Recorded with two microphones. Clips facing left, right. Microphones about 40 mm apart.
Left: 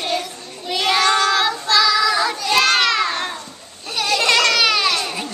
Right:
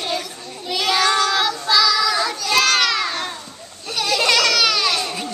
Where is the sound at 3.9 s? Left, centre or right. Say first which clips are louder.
Left 1 dB; centre.